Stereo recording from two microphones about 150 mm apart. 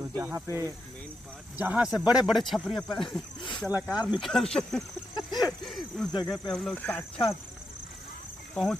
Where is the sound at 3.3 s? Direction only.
30° left (ahead or behind).